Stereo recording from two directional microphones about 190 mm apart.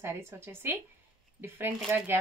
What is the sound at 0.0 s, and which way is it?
Speech, 10° right (ahead or behind).